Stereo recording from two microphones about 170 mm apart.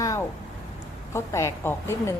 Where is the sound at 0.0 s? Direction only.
20° left (ahead or behind).